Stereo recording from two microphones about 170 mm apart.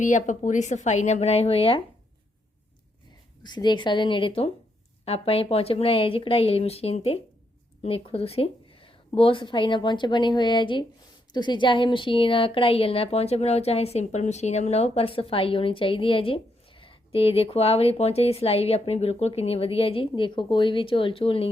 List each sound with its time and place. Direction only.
0.0 s a woman's voice: 45° left (ahead or behind)
3.4 s speech: 25° left (ahead or behind)